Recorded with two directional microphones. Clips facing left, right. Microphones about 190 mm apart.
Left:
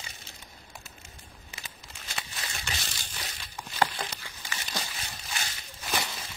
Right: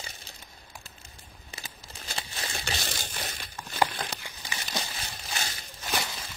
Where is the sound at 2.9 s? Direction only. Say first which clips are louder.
Right 5 dB; 55° right (ahead or behind).